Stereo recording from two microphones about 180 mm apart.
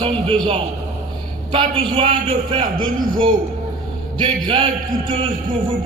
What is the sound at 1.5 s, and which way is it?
A man's voice, 30° right (ahead or behind).